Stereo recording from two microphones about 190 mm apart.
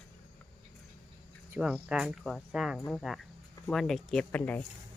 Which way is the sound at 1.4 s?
5° right (ahead or behind).